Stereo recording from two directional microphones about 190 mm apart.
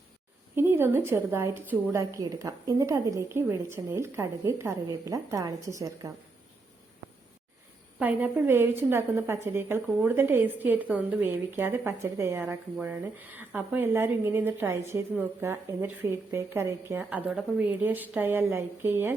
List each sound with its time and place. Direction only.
0.5 s a woman's voice: 10° right (ahead or behind)
7.9 s a woman's voice: 10° right (ahead or behind)